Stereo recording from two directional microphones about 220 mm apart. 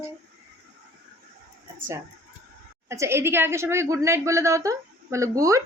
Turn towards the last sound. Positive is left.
turn(degrees=-15)  # may be behind; listen again after turning